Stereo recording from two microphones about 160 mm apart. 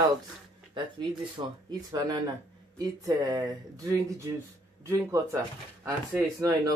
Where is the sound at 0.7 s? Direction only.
30° right (ahead or behind).